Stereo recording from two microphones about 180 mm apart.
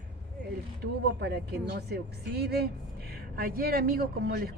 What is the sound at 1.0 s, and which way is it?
Speech, 70° right (ahead or behind).